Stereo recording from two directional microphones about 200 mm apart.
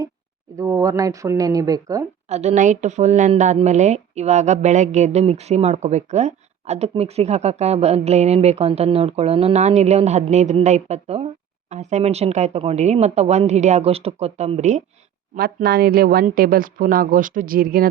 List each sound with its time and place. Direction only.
0.5 s speech: 15° right (ahead or behind)
2.3 s a woman's voice: 35° right (ahead or behind)
15.4 s speech: 50° right (ahead or behind)